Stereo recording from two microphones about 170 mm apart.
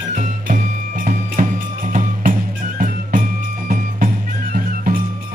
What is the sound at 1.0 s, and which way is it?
Music, 50° right (ahead or behind).